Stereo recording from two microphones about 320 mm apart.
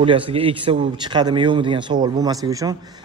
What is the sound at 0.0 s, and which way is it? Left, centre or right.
A man's voice, centre.